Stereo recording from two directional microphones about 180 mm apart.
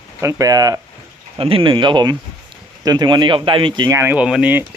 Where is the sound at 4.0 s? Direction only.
10° right (ahead or behind).